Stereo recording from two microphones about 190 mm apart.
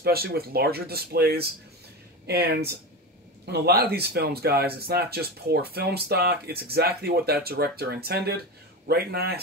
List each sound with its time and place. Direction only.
0.0 s speech: 55° right (ahead or behind)